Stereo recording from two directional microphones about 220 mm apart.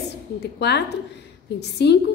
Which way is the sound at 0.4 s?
50° left (ahead or behind).